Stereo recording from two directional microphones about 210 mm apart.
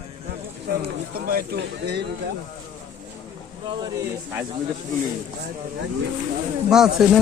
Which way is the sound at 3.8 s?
10° right (ahead or behind).